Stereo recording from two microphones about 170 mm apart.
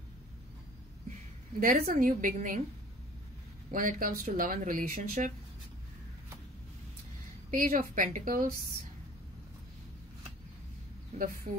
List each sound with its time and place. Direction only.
1.6 s speech: 55° right (ahead or behind)
3.7 s speech: 55° right (ahead or behind)
7.5 s speech: 55° right (ahead or behind)
11.1 s a woman's voice: 35° right (ahead or behind)